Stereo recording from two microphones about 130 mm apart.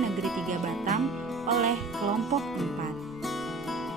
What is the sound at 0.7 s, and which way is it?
Music, centre (ahead or behind).